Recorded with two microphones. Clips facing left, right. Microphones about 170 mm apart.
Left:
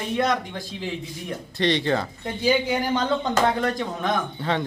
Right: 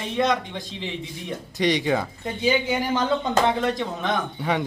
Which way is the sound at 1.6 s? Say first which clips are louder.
Even; 15° right (ahead or behind).